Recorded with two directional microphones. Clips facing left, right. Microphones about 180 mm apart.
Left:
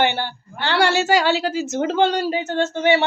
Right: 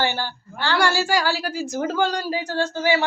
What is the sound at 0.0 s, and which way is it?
A woman's voice, 20° left (ahead or behind).